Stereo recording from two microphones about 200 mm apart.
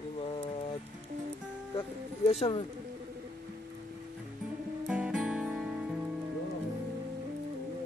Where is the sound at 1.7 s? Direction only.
30° left (ahead or behind).